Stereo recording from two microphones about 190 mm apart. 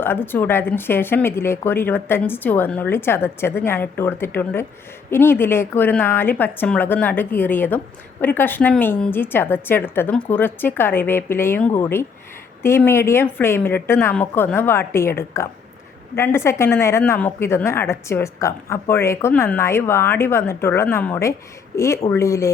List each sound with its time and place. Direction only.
0.0 s a woman's voice: 10° left (ahead or behind)